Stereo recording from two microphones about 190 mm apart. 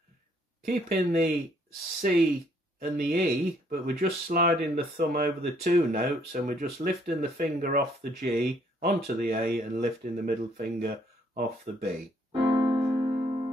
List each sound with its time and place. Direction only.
0.7 s speech: 50° right (ahead or behind)
12.3 s piano: 20° right (ahead or behind)